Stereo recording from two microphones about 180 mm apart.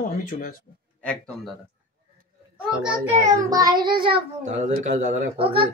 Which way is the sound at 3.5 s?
20° right (ahead or behind).